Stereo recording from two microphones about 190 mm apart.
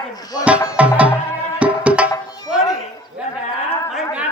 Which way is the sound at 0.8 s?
5° right (ahead or behind).